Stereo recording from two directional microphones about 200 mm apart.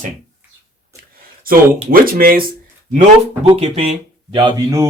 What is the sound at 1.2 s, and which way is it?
Speech, 45° right (ahead or behind).